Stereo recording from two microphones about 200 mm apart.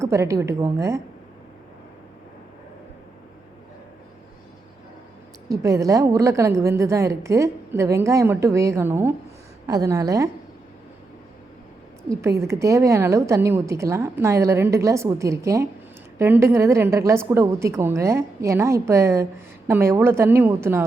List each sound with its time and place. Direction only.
0.0 s a woman's voice: 15° right (ahead or behind)
5.5 s a woman's voice: 15° right (ahead or behind)
12.4 s a woman's voice: 15° right (ahead or behind)